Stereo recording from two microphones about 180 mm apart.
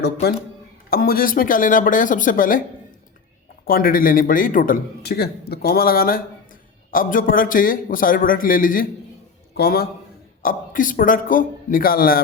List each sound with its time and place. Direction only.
0.0 s a man's voice: 65° left (ahead or behind); by 2.6 s 50° left (ahead or behind)
3.7 s a man's voice: 55° left (ahead or behind)
9.6 s a man's voice: 60° left (ahead or behind)
10.4 s a man's voice: 50° left (ahead or behind)